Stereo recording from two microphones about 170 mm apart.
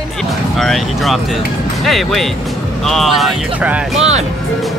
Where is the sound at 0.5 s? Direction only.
Centre (ahead or behind).